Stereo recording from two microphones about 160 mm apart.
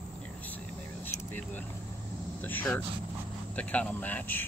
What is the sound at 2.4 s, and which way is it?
Speech, 10° left (ahead or behind).